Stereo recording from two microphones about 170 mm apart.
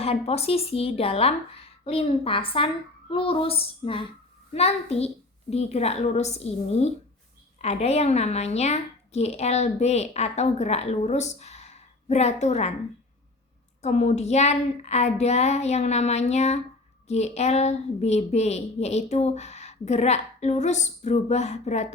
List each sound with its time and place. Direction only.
0.0 s a woman's voice: 35° left (ahead or behind)
13.8 s a woman's voice: 40° left (ahead or behind)